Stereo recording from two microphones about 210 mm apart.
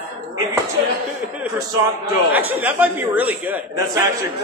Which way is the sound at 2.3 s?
10° right (ahead or behind).